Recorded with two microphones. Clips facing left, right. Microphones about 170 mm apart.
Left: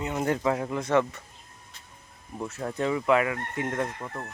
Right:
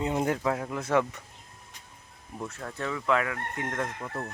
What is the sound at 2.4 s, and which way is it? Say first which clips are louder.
Speech: left 3 dB; 5° left (ahead or behind).